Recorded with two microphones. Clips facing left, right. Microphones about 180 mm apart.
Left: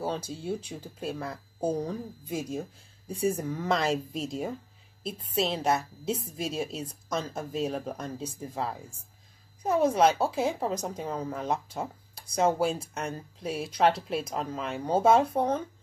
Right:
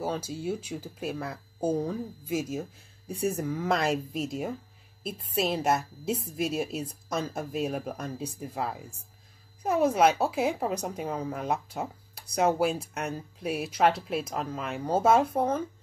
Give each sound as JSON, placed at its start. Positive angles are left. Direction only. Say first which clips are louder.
{"t": 0.0, "sound": "speech", "louder": "right 1 dB", "side_deg": -5}